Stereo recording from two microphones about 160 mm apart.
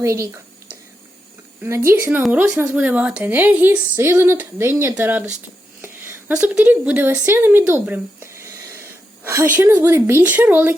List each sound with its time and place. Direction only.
0.0 s speech: 20° right (ahead or behind)
1.9 s speech: 15° right (ahead or behind)
5.8 s a sound: 15° right (ahead or behind)
9.6 s speech: 15° right (ahead or behind)